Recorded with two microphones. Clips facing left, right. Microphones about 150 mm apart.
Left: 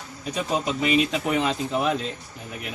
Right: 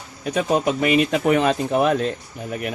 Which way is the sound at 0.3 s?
55° right (ahead or behind).